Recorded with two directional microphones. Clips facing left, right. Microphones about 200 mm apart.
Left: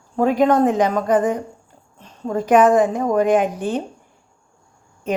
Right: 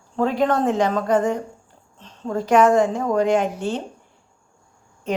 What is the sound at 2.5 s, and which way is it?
A woman's voice, 15° left (ahead or behind).